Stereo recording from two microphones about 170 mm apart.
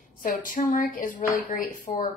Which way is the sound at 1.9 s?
25° left (ahead or behind).